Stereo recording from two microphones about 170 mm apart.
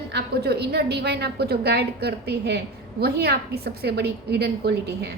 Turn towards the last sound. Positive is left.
turn(degrees=-75)  # may be behind; listen again after turning